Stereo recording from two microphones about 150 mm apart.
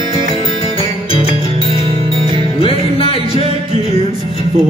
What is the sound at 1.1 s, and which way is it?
Music, 40° left (ahead or behind).